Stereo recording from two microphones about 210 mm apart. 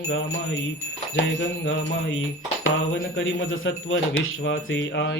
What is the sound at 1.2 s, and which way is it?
Speech, 60° left (ahead or behind).